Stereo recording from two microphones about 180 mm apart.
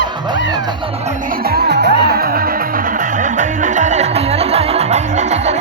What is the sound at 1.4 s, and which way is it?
Music, 60° right (ahead or behind).